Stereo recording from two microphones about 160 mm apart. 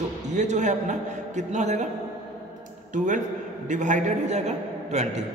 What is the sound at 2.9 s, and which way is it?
A man's voice, 50° right (ahead or behind).